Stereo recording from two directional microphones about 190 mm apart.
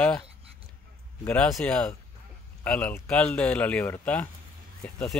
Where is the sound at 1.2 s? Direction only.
5° left (ahead or behind).